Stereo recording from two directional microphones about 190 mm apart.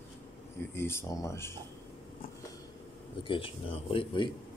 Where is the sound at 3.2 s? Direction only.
30° left (ahead or behind).